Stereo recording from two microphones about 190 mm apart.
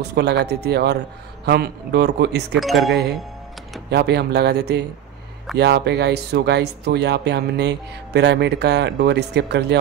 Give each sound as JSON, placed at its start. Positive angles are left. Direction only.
{"t": 0.1, "sound": "speech", "side_deg": -60}
{"t": 2.6, "sound": "speech", "side_deg": 0}
{"t": 3.9, "sound": "speech", "side_deg": -60}